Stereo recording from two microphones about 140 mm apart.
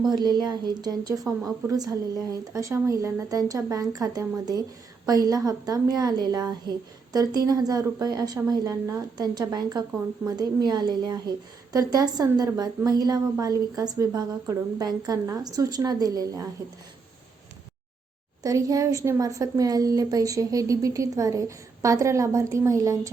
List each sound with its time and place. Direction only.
0.0 s a woman's voice: 30° right (ahead or behind)
18.4 s a woman's voice: 25° right (ahead or behind)